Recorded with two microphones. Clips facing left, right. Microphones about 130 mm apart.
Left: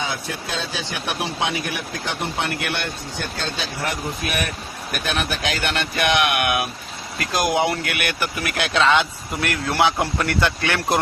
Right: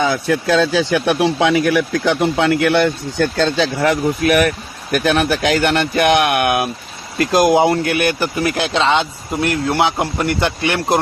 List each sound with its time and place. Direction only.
0.0 s speech: 90° right
4.9 s speech: 45° right (ahead or behind); by 11.0 s 20° right (ahead or behind)